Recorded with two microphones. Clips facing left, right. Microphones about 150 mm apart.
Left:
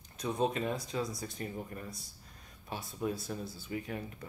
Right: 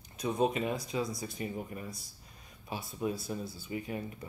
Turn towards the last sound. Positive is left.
turn(degrees=-5)  # may be behind; listen again after turning